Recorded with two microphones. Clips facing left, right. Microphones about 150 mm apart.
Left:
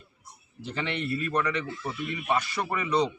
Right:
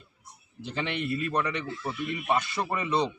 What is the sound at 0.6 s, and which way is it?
A man's voice, 20° right (ahead or behind).